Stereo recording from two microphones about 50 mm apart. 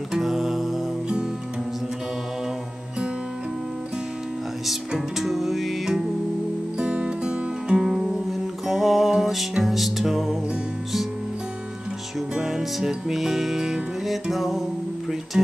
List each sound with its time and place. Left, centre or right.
0.1 s music: centre
4.6 s music: centre
6.8 s music: centre
12.4 s music: centre
15.3 s speech: centre